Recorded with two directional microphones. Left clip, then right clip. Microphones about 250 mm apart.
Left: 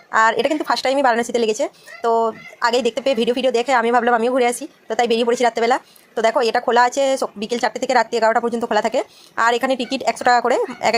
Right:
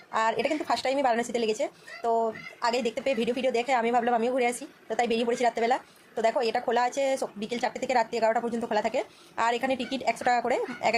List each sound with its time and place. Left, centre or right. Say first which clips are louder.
0.1 s a woman's voice: left 10 dB; centre